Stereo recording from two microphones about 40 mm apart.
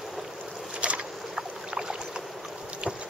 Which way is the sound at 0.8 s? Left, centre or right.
Right.